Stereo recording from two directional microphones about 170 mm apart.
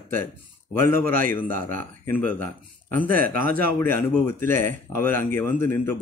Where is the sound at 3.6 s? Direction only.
10° left (ahead or behind).